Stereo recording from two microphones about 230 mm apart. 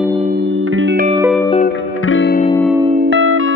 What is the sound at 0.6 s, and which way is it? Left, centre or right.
Music, right.